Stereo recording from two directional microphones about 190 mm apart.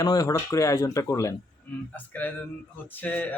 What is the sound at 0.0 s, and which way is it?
Speech, 20° left (ahead or behind).